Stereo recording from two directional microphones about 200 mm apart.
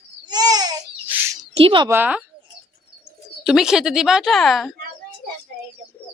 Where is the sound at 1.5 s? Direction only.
25° right (ahead or behind).